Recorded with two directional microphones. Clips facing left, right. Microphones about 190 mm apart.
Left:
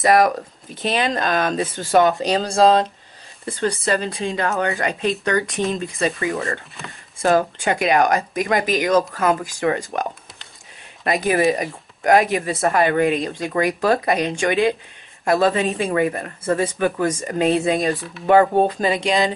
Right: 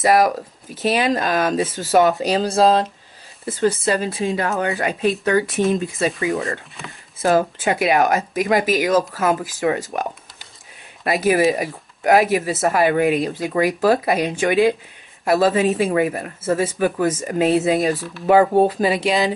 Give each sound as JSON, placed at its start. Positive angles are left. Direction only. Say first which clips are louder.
{"t": 0.0, "sound": "speech", "louder": "even", "side_deg": -5}
{"t": 11.1, "sound": "speech", "louder": "right 1 dB", "side_deg": -5}